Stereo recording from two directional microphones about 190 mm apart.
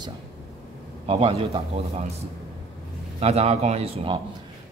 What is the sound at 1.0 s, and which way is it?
Speech, 30° right (ahead or behind).